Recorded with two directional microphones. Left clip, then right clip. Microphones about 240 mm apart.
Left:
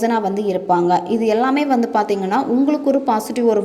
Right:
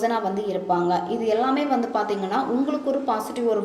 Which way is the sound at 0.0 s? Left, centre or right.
Left.